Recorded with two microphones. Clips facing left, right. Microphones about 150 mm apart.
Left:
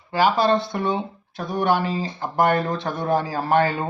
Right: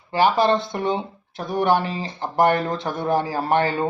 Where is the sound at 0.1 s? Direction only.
20° right (ahead or behind).